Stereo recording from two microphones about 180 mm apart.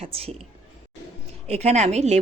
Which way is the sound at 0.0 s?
35° right (ahead or behind).